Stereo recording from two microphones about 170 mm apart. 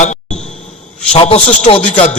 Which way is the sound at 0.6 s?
40° left (ahead or behind).